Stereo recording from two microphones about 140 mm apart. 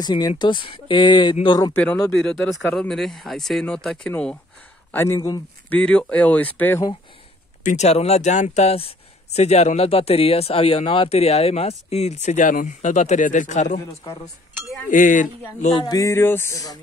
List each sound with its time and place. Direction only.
0.0 s speech: 30° left (ahead or behind)
1.7 s speech: 10° left (ahead or behind)
4.9 s speech: 20° left (ahead or behind)
5.7 s speech: 5° left (ahead or behind)
7.6 s speech: 55° left (ahead or behind)
14.0 s speech: 30° left (ahead or behind)
14.9 s speech: 70° left (ahead or behind)
15.9 s speech: 20° left (ahead or behind)